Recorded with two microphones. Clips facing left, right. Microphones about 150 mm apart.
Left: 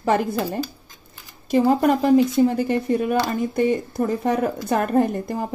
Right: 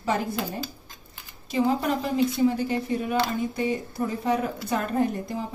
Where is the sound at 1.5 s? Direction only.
50° left (ahead or behind).